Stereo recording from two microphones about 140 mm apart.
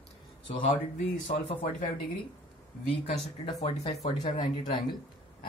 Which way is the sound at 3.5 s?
50° left (ahead or behind).